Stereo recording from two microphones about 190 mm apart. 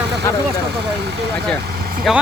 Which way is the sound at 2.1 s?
Centre (ahead or behind).